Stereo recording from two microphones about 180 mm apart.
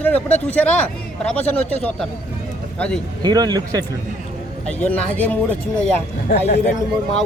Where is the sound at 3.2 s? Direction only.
20° right (ahead or behind).